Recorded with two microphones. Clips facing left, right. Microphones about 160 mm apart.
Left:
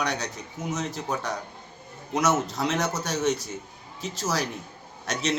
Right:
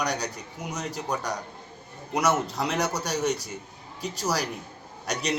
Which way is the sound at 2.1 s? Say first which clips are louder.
Even; 10° right (ahead or behind).